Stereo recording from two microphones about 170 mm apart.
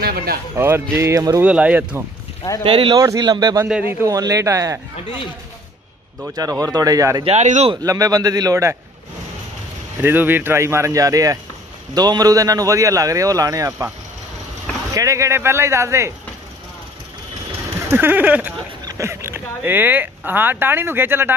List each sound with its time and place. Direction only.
0.0 s speech: 60° right (ahead or behind)
0.6 s speech: 15° right (ahead or behind)
1.4 s speech: 10° right (ahead or behind)
2.6 s a man's voice: 30° right (ahead or behind)
3.6 s a man's voice: 5° right (ahead or behind)
4.0 s a man's voice: 20° right (ahead or behind)
6.3 s a man's voice: 20° right (ahead or behind)
7.2 s a man's voice: 45° right (ahead or behind)
7.7 s a man's voice: 20° right (ahead or behind)
10.0 s a man's voice: 10° right (ahead or behind)
15.0 s speech: 20° right (ahead or behind)
17.8 s speech: 10° right (ahead or behind)